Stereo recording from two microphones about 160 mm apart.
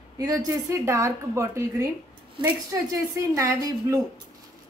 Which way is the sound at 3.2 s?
20° right (ahead or behind).